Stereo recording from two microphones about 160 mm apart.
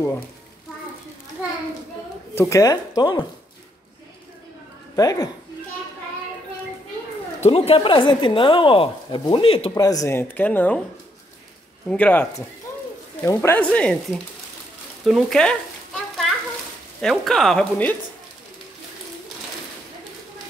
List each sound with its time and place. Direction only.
2.5 s speech: 20° left (ahead or behind)
4.9 s speech: 20° left (ahead or behind)
7.3 s speech: 40° left (ahead or behind)
9.8 s speech: 20° left (ahead or behind)
11.9 s speech: 10° left (ahead or behind)
15.0 s stir: centre (ahead or behind)
17.0 s speech: centre (ahead or behind)